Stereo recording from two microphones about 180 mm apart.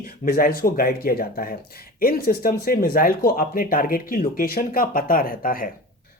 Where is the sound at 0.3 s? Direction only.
55° left (ahead or behind).